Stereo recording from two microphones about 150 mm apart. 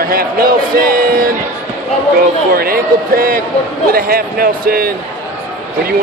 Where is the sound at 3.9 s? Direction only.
85° right.